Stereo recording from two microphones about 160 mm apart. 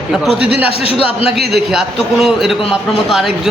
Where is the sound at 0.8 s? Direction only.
35° left (ahead or behind).